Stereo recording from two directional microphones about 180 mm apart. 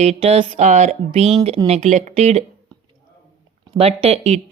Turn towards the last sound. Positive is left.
turn(degrees=-35)  # may be behind; listen again after turning